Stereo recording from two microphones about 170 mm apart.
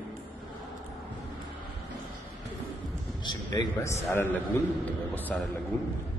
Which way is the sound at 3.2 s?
25° left (ahead or behind).